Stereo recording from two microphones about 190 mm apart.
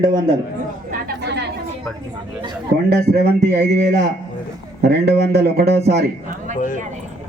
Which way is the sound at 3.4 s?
60° right (ahead or behind).